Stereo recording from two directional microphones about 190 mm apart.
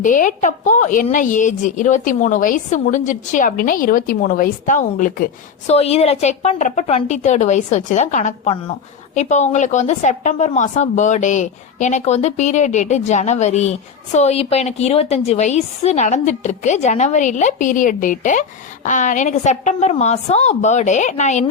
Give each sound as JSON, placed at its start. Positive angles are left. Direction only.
{"t": 0.0, "sound": "a woman's voice", "side_deg": 45}
{"t": 5.7, "sound": "a woman's voice", "side_deg": 35}